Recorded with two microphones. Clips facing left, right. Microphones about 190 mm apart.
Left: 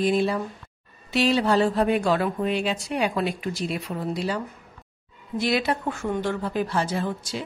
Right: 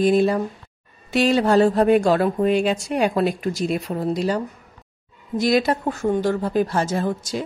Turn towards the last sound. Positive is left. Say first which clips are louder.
# right 5 dB
turn(degrees=-45)  # may be behind; listen again after turning